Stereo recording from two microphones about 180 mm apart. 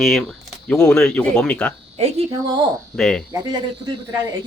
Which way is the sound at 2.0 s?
35° right (ahead or behind).